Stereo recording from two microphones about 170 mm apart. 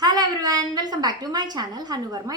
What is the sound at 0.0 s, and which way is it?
A woman's voice, 25° right (ahead or behind).